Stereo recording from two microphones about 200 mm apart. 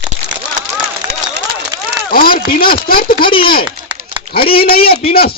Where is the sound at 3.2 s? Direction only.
25° left (ahead or behind).